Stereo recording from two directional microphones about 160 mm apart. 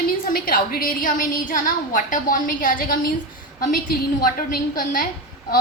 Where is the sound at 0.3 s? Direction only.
65° left (ahead or behind).